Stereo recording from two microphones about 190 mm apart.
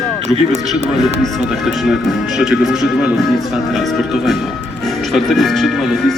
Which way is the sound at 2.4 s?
Centre (ahead or behind).